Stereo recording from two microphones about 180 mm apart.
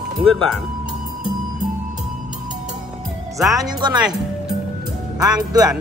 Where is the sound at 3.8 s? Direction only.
25° right (ahead or behind).